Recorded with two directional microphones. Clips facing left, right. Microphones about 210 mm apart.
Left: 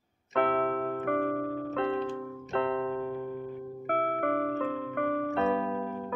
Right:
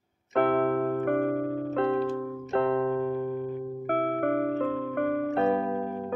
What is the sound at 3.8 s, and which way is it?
Music, 40° right (ahead or behind).